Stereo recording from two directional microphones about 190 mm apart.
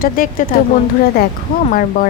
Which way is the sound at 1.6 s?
45° left (ahead or behind).